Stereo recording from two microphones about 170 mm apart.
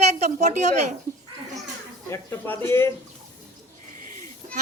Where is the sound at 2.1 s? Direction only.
15° left (ahead or behind).